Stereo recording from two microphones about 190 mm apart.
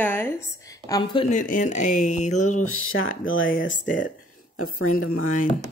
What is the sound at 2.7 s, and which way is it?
Speech, 90° left.